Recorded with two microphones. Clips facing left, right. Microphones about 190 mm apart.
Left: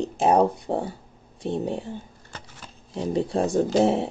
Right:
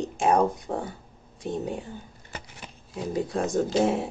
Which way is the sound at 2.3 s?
10° right (ahead or behind).